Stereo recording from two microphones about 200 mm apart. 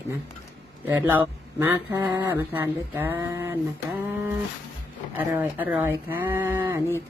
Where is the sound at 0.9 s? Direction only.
10° right (ahead or behind).